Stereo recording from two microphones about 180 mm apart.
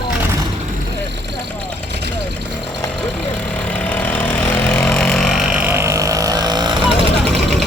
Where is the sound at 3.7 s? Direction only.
10° left (ahead or behind); by 6.8 s 25° right (ahead or behind).